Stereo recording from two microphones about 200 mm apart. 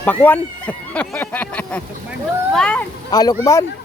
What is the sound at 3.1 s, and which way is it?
Speech, 20° left (ahead or behind).